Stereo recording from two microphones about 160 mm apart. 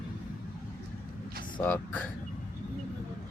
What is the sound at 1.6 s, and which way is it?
Speech, 10° left (ahead or behind).